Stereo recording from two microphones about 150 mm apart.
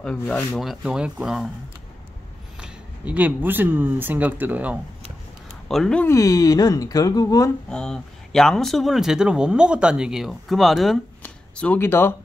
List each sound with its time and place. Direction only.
0.0 s speech: 5° left (ahead or behind)
0.6 s speech: 5° right (ahead or behind)
2.6 s speech: 10° right (ahead or behind)
5.7 s speech: 5° left (ahead or behind)
6.0 s speech: 20° left (ahead or behind)
7.7 s speech: 5° left (ahead or behind)